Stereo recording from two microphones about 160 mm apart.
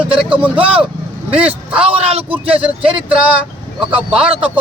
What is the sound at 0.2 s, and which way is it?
A man's voice, 5° right (ahead or behind).